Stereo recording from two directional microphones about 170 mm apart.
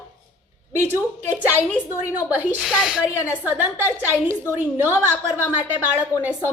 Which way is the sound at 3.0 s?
15° left (ahead or behind).